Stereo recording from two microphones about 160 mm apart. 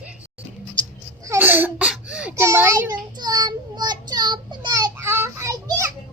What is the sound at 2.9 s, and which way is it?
Child singing, 25° right (ahead or behind).